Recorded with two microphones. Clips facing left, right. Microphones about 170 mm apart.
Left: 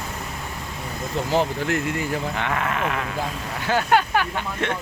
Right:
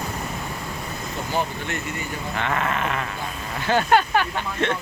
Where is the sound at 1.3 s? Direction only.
90° left.